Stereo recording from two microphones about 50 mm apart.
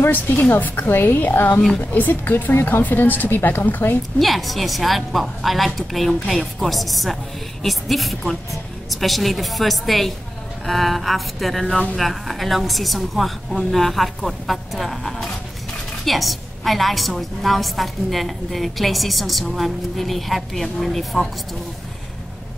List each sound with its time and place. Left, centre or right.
0.0 s a woman's voice: left
4.2 s a woman's voice: centre